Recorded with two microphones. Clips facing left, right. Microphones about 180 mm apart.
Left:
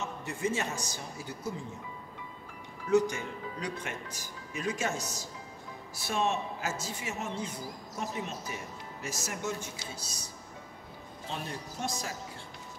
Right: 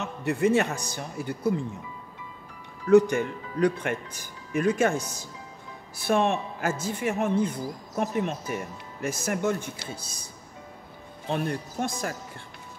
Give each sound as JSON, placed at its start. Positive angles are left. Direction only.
{"t": 0.0, "sound": "a man's voice", "side_deg": -65}
{"t": 2.9, "sound": "a man's voice", "side_deg": -60}
{"t": 11.2, "sound": "a man's voice", "side_deg": -55}